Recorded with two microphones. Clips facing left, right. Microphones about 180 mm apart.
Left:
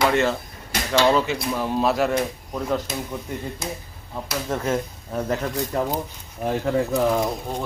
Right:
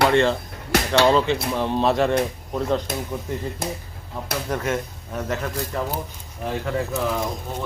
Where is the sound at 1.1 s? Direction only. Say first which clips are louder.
Right 1 dB; 5° left (ahead or behind).